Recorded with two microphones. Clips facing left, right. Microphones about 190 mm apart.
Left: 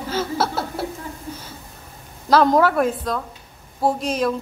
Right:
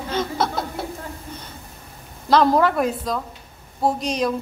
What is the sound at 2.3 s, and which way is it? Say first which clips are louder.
A woman's voice: left 1 dB; centre (ahead or behind).